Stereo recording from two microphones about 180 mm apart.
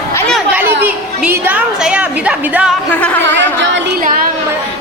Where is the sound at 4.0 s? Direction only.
50° right (ahead or behind).